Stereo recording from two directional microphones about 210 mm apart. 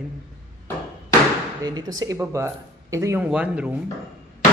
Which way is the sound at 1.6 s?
20° right (ahead or behind).